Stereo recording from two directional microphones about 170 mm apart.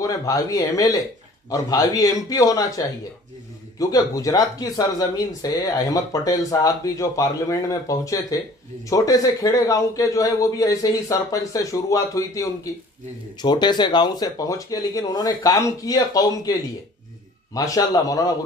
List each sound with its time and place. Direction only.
0.0 s speech: 20° left (ahead or behind)
17.6 s speech: 20° left (ahead or behind)